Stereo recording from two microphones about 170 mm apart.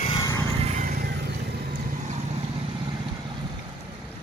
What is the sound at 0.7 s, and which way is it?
Vehicle, 60° right (ahead or behind).